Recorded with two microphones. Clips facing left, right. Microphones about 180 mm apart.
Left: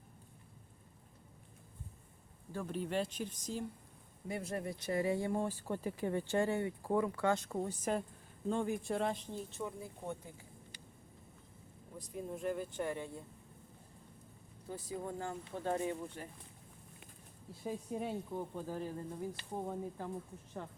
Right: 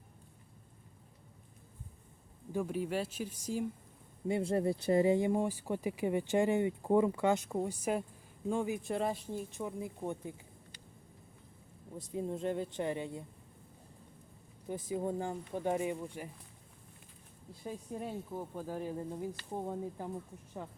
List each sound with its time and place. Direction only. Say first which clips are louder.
2.5 s speech: right 4 dB; 10° right (ahead or behind)
4.3 s speech: right 8 dB; 25° right (ahead or behind)
11.9 s speech: right 5 dB; 25° right (ahead or behind)
14.7 s speech: right 6 dB; 20° right (ahead or behind)
17.5 s speech: left 2 dB; 5° left (ahead or behind); by 19.3 s 15° right (ahead or behind)
19.5 s speech: right 2 dB; 5° right (ahead or behind)